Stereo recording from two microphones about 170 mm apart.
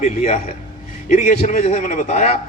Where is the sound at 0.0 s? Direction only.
45° left (ahead or behind).